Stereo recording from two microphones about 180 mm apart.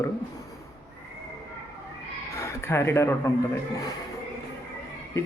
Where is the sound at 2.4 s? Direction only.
15° left (ahead or behind).